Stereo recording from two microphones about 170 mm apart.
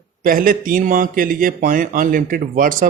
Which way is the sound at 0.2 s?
55° right (ahead or behind).